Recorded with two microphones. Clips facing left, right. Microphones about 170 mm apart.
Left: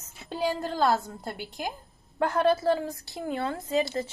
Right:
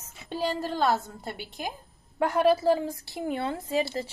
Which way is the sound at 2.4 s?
10° right (ahead or behind).